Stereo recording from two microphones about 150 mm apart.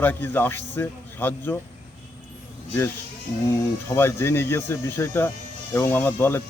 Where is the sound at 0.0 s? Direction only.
15° left (ahead or behind).